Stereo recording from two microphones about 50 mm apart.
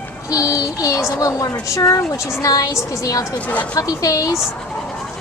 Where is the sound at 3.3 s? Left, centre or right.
Left.